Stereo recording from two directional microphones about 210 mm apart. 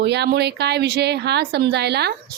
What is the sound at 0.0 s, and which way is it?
Speech, 50° right (ahead or behind).